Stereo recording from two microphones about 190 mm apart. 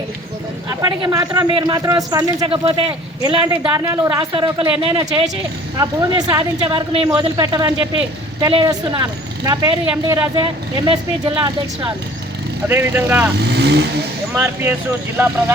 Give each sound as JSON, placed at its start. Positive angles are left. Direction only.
{"t": 0.7, "sound": "speech", "side_deg": -20}
{"t": 2.6, "sound": "speech", "side_deg": -30}
{"t": 3.4, "sound": "speech", "side_deg": -15}
{"t": 9.0, "sound": "speech", "side_deg": -15}
{"t": 10.3, "sound": "speech", "side_deg": -25}
{"t": 12.6, "sound": "speech", "side_deg": -10}
{"t": 13.3, "sound": "speech", "side_deg": -60}
{"t": 14.3, "sound": "speech", "side_deg": -15}